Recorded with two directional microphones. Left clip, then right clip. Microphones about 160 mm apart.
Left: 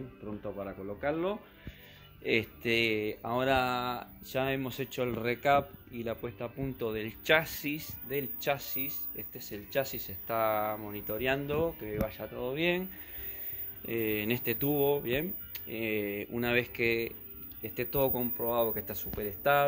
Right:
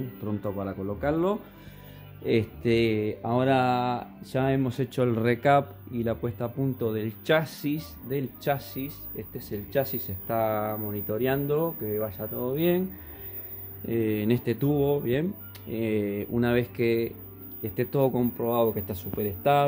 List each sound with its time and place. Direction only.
0.4 s speech: 5° right (ahead or behind)
13.8 s speech: 10° right (ahead or behind)